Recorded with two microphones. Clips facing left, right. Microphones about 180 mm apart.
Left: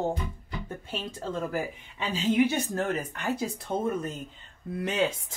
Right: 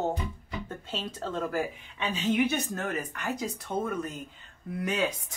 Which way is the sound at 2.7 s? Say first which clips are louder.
Left 3 dB; 30° left (ahead or behind).